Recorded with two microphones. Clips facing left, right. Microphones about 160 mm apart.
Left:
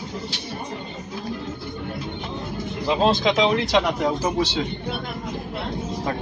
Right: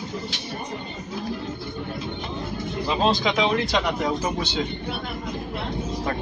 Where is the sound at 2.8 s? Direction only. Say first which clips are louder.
Left 3 dB; 20° left (ahead or behind).